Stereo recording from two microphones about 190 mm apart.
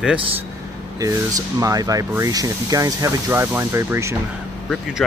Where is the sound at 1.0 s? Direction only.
20° right (ahead or behind).